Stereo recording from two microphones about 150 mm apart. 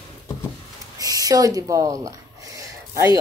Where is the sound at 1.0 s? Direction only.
25° right (ahead or behind).